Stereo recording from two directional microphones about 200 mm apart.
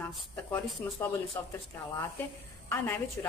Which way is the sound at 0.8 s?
5° left (ahead or behind).